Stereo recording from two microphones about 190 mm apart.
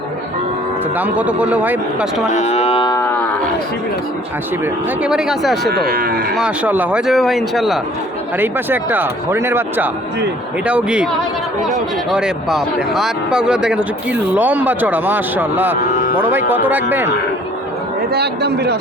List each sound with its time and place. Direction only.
0.9 s speech: 10° right (ahead or behind)
2.3 s speech: 35° left (ahead or behind)
4.6 s speech: 5° right (ahead or behind)
5.6 s speech: 55° right (ahead or behind)
6.3 s speech: 5° right (ahead or behind)
8.4 s speech: 10° right (ahead or behind)
12.1 s speech: 5° right (ahead or behind)
18.1 s a man's voice: 60° right (ahead or behind)